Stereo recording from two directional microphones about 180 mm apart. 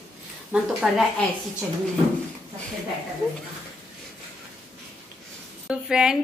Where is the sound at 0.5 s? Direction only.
5° right (ahead or behind).